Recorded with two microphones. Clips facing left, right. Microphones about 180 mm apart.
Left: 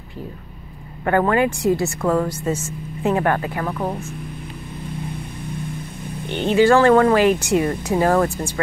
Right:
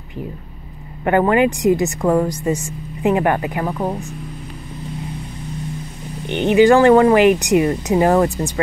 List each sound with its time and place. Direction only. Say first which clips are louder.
1.0 s speech: right 3 dB; 20° right (ahead or behind)
6.2 s speech: right 3 dB; 15° right (ahead or behind)